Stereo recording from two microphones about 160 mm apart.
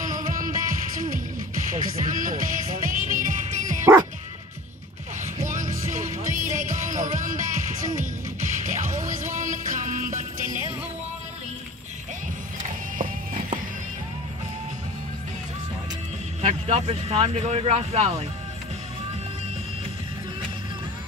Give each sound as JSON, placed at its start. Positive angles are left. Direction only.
{"t": 0.0, "sound": "music", "side_deg": -55}
{"t": 5.4, "sound": "music", "side_deg": -55}
{"t": 8.6, "sound": "music", "side_deg": -55}
{"t": 12.9, "sound": "music", "side_deg": -55}
{"t": 16.3, "sound": "speech", "side_deg": -40}